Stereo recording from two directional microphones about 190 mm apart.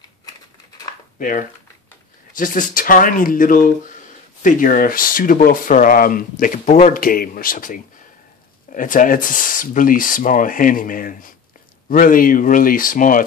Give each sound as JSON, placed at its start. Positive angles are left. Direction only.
{"t": 2.3, "sound": "speech", "side_deg": 45}